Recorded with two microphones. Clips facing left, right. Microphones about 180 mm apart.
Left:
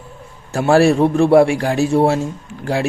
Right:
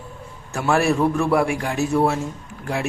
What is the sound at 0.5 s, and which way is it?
Speech, 30° left (ahead or behind).